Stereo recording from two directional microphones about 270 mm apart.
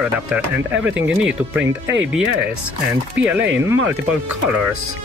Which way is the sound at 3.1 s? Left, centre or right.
Centre.